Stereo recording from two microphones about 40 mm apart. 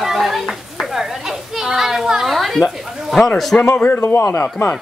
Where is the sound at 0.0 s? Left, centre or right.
Centre.